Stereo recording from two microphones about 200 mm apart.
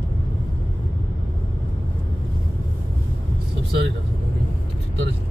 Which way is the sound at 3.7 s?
60° right (ahead or behind).